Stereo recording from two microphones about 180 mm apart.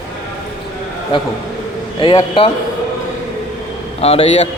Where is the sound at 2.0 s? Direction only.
25° left (ahead or behind).